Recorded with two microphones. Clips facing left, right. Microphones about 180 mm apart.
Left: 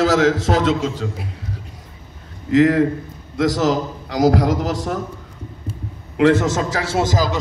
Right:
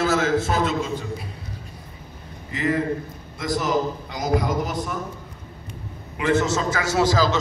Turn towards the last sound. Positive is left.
turn(degrees=15)  # may be behind; listen again after turning